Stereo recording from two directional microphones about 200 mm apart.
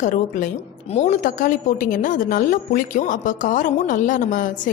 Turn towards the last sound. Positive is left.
turn(degrees=40)  # may be behind; listen again after turning